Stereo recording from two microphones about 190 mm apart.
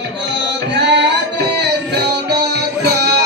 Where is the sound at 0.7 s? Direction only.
65° right (ahead or behind).